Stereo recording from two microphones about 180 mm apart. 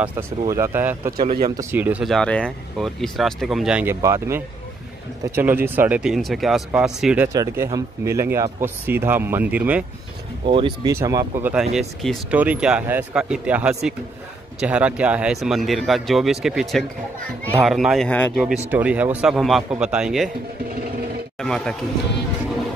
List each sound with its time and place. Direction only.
0.5 s speech: 15° right (ahead or behind)
7.3 s speech: 15° right (ahead or behind)
10.4 s speech: 30° right (ahead or behind)
10.9 s speech: 15° right (ahead or behind)
11.7 s speech: centre (ahead or behind)
18.3 s speech: 5° right (ahead or behind)
21.4 s speech: 5° left (ahead or behind)